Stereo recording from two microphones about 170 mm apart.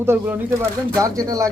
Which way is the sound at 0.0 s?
15° right (ahead or behind).